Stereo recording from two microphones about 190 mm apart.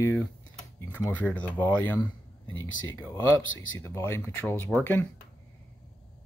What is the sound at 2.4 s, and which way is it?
Speech, 90° left.